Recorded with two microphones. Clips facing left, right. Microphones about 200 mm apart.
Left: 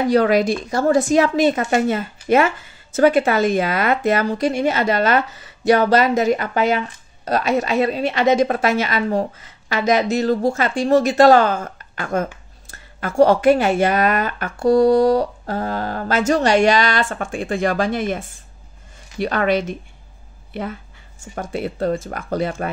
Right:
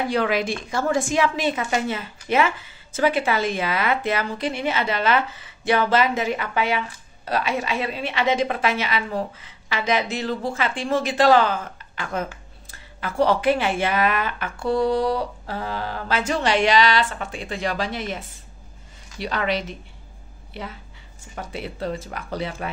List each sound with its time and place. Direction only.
0.1 s a woman's voice: 40° left (ahead or behind)
21.2 s a woman's voice: 45° left (ahead or behind)